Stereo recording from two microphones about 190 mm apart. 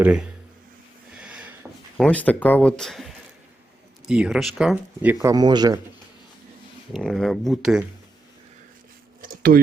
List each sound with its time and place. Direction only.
0.0 s speech: 5° right (ahead or behind)
1.1 s a sound: 5° right (ahead or behind)
2.0 s speech: 5° left (ahead or behind)
5.1 s speech: 20° right (ahead or behind)
6.9 s speech: centre (ahead or behind)
9.2 s a sound: 45° right (ahead or behind)